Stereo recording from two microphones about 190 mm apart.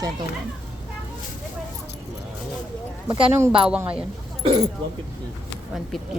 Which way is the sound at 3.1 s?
25° right (ahead or behind).